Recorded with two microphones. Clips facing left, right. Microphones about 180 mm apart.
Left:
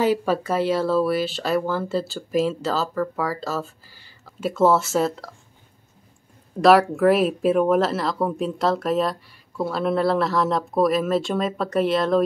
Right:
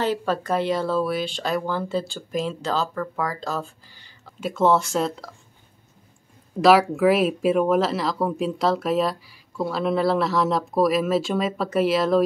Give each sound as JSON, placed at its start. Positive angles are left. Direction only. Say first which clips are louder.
{"t": 0.0, "sound": "speech", "louder": "left 3 dB", "side_deg": 10}
{"t": 6.6, "sound": "speech", "louder": "left 1 dB", "side_deg": 0}